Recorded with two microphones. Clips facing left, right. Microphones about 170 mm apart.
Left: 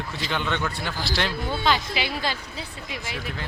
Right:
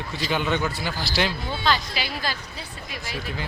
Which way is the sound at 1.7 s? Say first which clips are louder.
Even; 20° left (ahead or behind).